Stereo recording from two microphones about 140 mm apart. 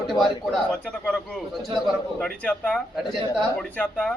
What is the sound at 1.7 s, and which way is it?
A man's voice, 5° left (ahead or behind).